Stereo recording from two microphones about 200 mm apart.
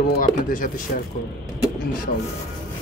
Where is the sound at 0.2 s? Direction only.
40° left (ahead or behind).